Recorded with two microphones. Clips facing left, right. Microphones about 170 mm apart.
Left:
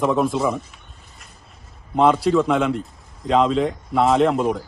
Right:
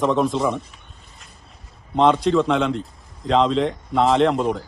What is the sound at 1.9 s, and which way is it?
A man's voice, 5° left (ahead or behind).